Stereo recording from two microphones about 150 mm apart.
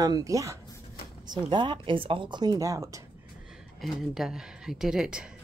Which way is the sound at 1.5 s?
30° right (ahead or behind).